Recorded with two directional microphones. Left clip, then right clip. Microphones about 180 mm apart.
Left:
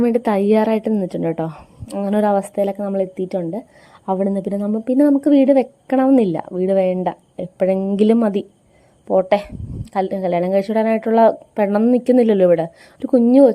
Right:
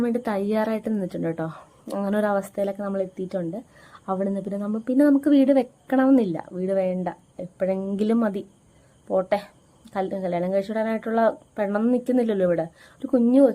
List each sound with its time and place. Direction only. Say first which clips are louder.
0.0 s a woman's voice: left 8 dB; 40° left (ahead or behind)